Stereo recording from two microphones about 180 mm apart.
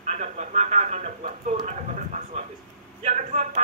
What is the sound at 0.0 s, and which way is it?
Speech, 40° right (ahead or behind).